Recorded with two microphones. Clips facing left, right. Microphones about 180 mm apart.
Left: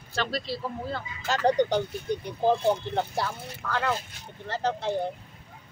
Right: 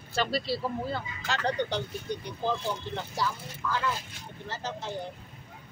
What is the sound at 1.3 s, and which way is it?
Speech, 45° left (ahead or behind).